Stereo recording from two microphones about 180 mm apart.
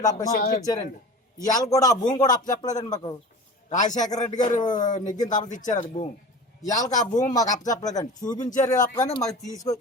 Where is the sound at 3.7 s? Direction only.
45° left (ahead or behind).